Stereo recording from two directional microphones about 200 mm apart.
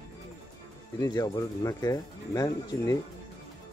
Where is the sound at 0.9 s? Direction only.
20° left (ahead or behind).